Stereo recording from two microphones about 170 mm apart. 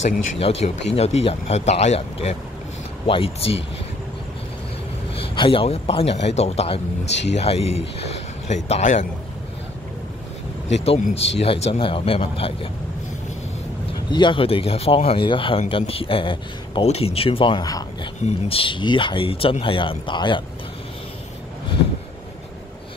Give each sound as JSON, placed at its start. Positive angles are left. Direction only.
{"t": 0.0, "sound": "speech", "side_deg": 35}
{"t": 5.1, "sound": "a man's voice", "side_deg": 30}
{"t": 10.7, "sound": "speech", "side_deg": 40}
{"t": 14.1, "sound": "speech", "side_deg": 30}
{"t": 18.2, "sound": "speech", "side_deg": 35}